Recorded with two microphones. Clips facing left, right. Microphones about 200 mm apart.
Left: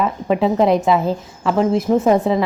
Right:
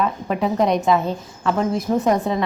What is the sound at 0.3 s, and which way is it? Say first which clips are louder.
Speech: left 6 dB; 25° left (ahead or behind).